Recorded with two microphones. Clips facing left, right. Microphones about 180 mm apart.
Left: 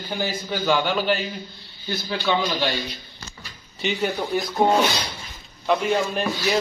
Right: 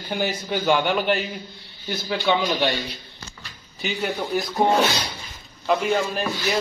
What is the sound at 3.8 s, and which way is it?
Speech, 10° right (ahead or behind).